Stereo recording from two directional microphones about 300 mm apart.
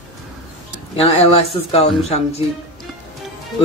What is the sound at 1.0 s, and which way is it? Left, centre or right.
Speech, centre.